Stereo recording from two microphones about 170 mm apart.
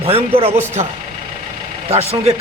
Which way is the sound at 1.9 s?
35° right (ahead or behind).